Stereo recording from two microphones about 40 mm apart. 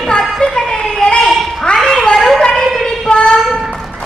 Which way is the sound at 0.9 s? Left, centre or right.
Centre.